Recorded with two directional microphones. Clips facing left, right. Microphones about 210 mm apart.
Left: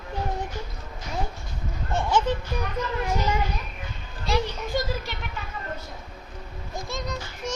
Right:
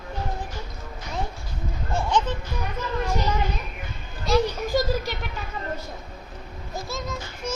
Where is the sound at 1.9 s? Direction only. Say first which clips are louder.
Left 1 dB; 5° left (ahead or behind).